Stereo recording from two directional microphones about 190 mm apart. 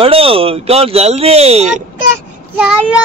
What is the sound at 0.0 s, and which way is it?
A man's voice, 30° right (ahead or behind).